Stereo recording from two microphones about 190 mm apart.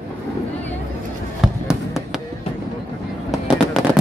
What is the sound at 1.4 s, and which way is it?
Music, centre (ahead or behind).